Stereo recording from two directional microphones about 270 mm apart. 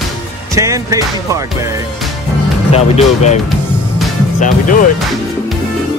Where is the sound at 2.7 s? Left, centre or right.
Left.